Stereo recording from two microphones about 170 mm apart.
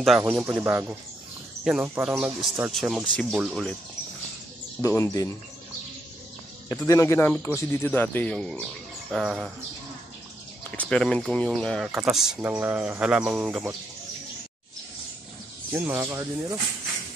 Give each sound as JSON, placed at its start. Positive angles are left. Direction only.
{"t": 0.2, "sound": "speech", "side_deg": -10}
{"t": 4.8, "sound": "speech", "side_deg": 20}
{"t": 6.7, "sound": "a man's voice", "side_deg": 20}
{"t": 10.8, "sound": "speech", "side_deg": 5}
{"t": 15.7, "sound": "speech", "side_deg": -10}